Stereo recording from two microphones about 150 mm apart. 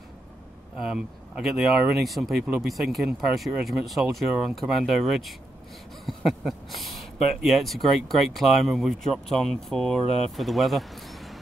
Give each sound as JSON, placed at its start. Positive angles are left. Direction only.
{"t": 0.7, "sound": "speech", "side_deg": -5}